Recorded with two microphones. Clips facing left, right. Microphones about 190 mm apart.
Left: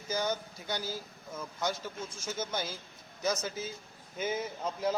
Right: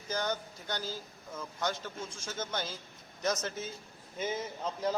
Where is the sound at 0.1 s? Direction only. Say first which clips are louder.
Left 1 dB; 10° left (ahead or behind).